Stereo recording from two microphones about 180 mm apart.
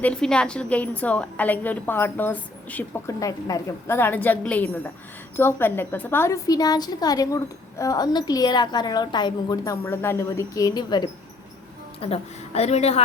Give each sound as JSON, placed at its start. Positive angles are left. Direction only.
{"t": 0.0, "sound": "a woman's voice", "side_deg": 5}
{"t": 11.9, "sound": "a woman's voice", "side_deg": 35}